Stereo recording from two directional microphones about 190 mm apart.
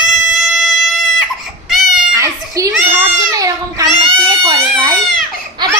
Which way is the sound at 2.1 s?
15° right (ahead or behind).